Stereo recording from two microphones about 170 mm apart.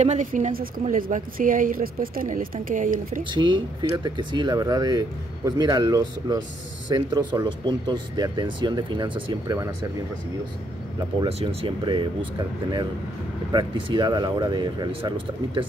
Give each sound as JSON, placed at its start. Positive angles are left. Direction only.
{"t": 0.0, "sound": "a woman's voice", "side_deg": -45}
{"t": 3.3, "sound": "speech", "side_deg": -25}
{"t": 11.2, "sound": "speech", "side_deg": -35}
{"t": 13.5, "sound": "speech", "side_deg": -25}